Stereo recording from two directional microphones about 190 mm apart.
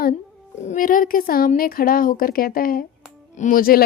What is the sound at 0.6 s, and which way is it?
A woman's voice, 40° left (ahead or behind).